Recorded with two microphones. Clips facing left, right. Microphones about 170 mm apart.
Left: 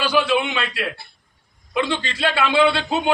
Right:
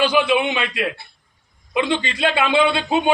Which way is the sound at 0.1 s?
15° right (ahead or behind).